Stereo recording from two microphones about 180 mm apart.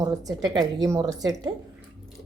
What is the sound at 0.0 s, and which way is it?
A woman's voice, 20° right (ahead or behind).